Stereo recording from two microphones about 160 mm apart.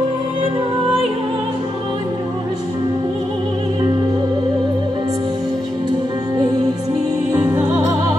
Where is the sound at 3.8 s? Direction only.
25° right (ahead or behind).